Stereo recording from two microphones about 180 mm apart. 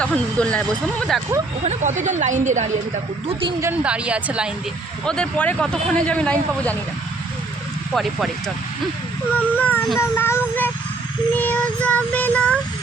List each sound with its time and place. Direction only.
0.0 s speech: 5° left (ahead or behind)
1.6 s speech: 40° right (ahead or behind)
3.6 s speech: 10° right (ahead or behind)
5.0 s speech: 5° left (ahead or behind)
7.9 s speech: centre (ahead or behind)
9.3 s child singing: 10° left (ahead or behind)